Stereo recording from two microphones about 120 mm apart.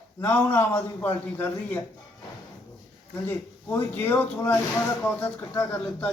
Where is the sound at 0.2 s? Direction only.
15° left (ahead or behind).